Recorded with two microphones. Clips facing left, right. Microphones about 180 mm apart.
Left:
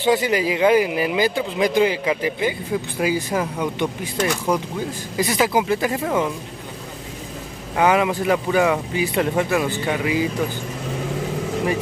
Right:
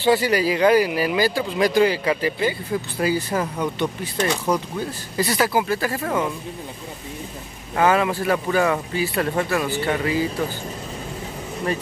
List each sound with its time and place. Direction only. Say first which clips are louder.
0.0 s speech: even; 20° left (ahead or behind)
7.7 s speech: left 1 dB; 15° left (ahead or behind)